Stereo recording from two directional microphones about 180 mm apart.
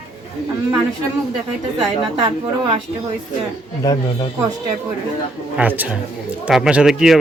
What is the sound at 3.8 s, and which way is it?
Speech, 25° left (ahead or behind).